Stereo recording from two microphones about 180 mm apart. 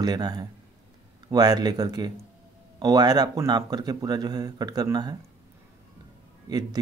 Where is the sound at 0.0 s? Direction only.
20° right (ahead or behind).